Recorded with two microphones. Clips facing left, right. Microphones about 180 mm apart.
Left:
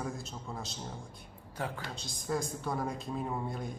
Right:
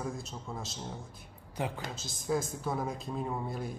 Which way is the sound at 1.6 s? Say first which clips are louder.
Right 2 dB; 20° right (ahead or behind).